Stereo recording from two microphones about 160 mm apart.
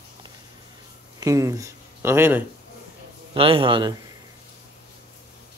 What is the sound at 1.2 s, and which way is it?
Speech, 20° right (ahead or behind).